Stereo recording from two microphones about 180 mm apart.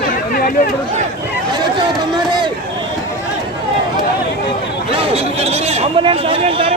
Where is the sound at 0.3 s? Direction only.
55° left (ahead or behind).